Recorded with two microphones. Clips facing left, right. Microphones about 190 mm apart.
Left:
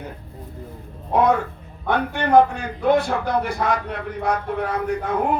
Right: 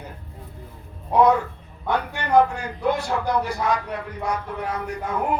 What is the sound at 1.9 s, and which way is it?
A man's voice, 60° left (ahead or behind).